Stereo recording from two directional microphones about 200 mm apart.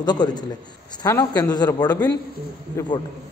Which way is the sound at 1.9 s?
10° left (ahead or behind).